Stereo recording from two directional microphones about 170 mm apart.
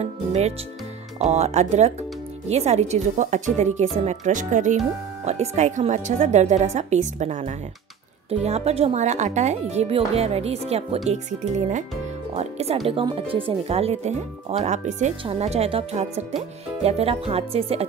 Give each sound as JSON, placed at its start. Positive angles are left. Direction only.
{"t": 0.0, "sound": "speech", "side_deg": -40}